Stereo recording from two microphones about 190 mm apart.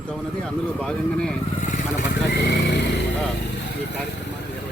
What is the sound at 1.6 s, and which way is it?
Vehicle, 45° left (ahead or behind).